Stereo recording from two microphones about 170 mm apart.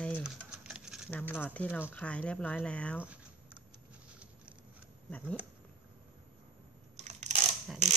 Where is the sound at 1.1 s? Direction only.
10° left (ahead or behind).